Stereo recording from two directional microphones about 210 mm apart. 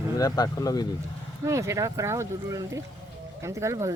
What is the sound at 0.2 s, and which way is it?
Speech, 15° left (ahead or behind).